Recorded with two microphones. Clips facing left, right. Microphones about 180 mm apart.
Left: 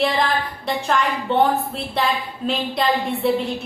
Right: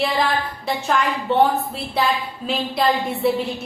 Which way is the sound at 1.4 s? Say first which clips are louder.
Right 1 dB; centre (ahead or behind).